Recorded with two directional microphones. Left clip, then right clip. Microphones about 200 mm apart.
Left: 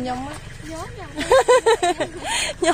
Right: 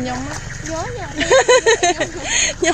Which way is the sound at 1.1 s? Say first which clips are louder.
Right 3 dB; 25° left (ahead or behind).